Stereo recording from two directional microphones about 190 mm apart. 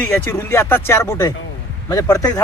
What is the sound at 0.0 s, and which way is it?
Speech, 15° left (ahead or behind).